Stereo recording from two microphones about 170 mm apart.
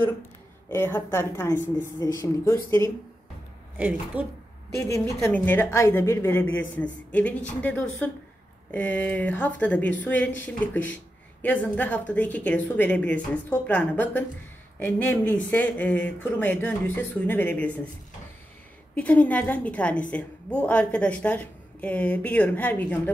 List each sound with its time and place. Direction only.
0.7 s a woman's voice: 15° left (ahead or behind)
3.7 s a woman's voice: 10° right (ahead or behind)
4.7 s a woman's voice: 15° left (ahead or behind)
18.9 s a woman's voice: 10° left (ahead or behind)